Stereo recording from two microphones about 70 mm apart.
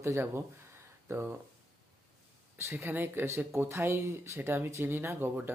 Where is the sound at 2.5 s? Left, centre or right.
Right.